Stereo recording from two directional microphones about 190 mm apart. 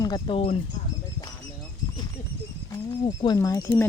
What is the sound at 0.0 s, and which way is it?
Speech, 25° left (ahead or behind).